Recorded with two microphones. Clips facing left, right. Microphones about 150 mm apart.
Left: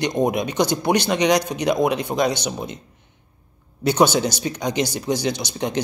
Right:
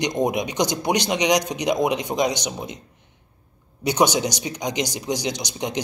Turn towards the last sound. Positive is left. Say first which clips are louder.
# left 3 dB
turn(degrees=-15)  # may be behind; listen again after turning